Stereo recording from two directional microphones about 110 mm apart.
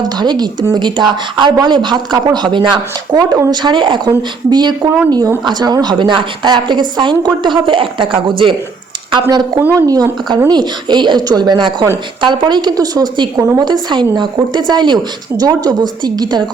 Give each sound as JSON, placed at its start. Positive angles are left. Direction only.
{"t": 0.0, "sound": "a woman's voice", "side_deg": -40}
{"t": 9.6, "sound": "a woman's voice", "side_deg": -20}
{"t": 9.8, "sound": "a woman's voice", "side_deg": -35}